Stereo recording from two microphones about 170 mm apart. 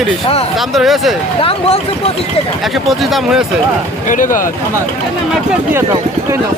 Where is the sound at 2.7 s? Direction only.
Centre (ahead or behind).